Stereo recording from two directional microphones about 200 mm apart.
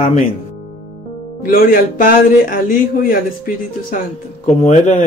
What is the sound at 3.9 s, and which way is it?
Speech, 45° left (ahead or behind).